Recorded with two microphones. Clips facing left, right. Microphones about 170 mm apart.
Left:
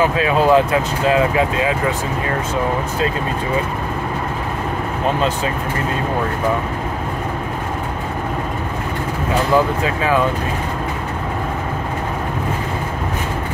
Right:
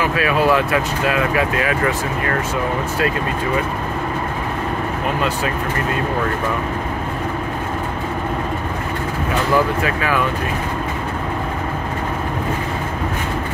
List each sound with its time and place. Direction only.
0.1 s speech: 25° left (ahead or behind)